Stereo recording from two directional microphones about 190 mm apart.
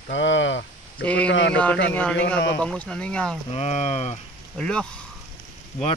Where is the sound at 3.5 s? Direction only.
35° left (ahead or behind).